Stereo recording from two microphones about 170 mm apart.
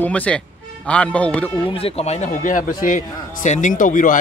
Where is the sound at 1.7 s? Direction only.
35° left (ahead or behind); by 4.2 s 50° left (ahead or behind).